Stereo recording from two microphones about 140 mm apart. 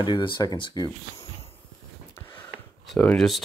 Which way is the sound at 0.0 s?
35° left (ahead or behind).